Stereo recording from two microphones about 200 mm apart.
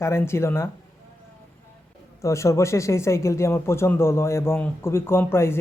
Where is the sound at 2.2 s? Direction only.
15° left (ahead or behind).